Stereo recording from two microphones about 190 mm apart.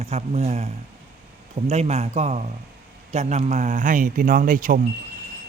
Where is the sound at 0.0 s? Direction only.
35° right (ahead or behind).